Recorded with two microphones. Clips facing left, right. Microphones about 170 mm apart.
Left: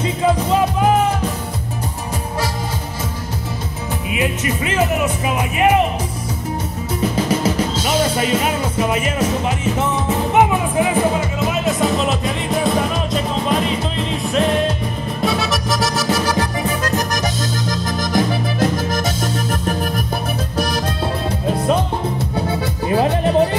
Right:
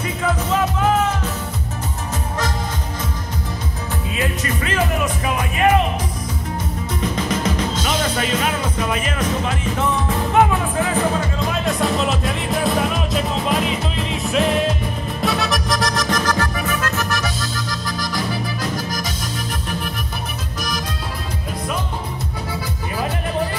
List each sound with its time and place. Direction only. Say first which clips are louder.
0.2 s music: left 4 dB; 25° left (ahead or behind)
4.1 s music: left 3 dB; 15° left (ahead or behind)
7.0 s music: left 5 dB; 10° left (ahead or behind)
8.4 s music: left 3 dB; 25° left (ahead or behind); by 16.4 s 10° left (ahead or behind)
16.6 s music: left 3 dB; 35° left (ahead or behind)
17.2 s music: left 4 dB; 45° left (ahead or behind)